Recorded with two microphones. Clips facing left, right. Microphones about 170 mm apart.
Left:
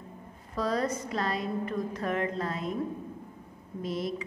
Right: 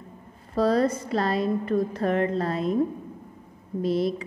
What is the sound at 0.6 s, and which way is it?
A woman's voice, 30° right (ahead or behind).